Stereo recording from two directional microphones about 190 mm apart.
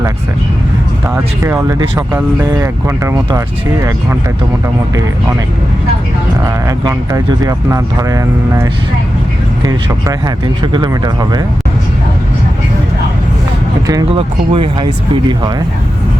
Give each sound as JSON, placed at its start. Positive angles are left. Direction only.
{"t": 1.1, "sound": "speech", "side_deg": -15}
{"t": 6.4, "sound": "speech", "side_deg": -15}
{"t": 14.1, "sound": "speech", "side_deg": -30}